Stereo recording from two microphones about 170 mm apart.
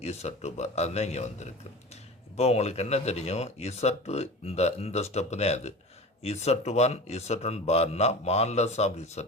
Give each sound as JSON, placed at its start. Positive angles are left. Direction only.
{"t": 0.0, "sound": "speech", "side_deg": 40}